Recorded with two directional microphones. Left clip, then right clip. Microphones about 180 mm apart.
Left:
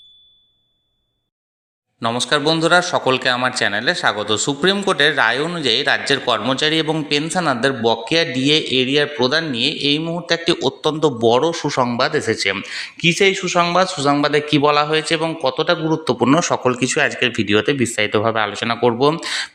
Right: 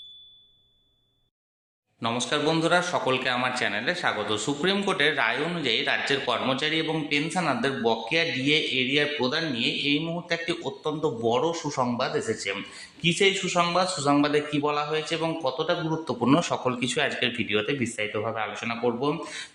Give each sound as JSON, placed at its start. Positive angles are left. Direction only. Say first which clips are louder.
{"t": 2.0, "sound": "a man's voice", "louder": "left 8 dB", "side_deg": 40}